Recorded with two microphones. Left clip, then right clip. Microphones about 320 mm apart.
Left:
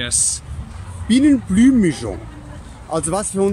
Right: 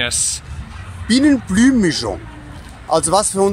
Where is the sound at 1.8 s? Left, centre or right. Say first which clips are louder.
Right 3 dB; right.